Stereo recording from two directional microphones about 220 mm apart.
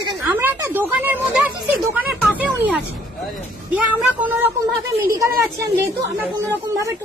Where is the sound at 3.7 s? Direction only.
5° right (ahead or behind).